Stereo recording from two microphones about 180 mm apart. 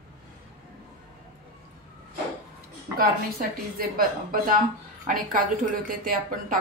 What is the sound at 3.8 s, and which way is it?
A woman's voice, 55° right (ahead or behind).